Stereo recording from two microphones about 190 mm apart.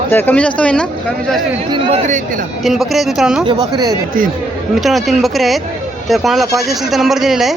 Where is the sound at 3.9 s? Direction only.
45° right (ahead or behind).